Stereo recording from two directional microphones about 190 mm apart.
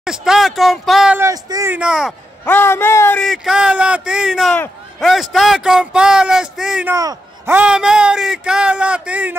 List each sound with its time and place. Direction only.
0.0 s speech: 5° right (ahead or behind)
1.3 s speech: 15° right (ahead or behind)
2.4 s speech: 10° left (ahead or behind); by 9.4 s 5° right (ahead or behind)